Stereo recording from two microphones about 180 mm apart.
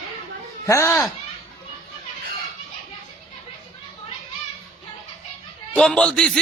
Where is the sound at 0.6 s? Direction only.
15° left (ahead or behind).